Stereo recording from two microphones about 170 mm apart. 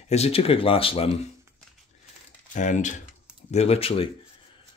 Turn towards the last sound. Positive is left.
turn(degrees=35)  # may be behind; listen again after turning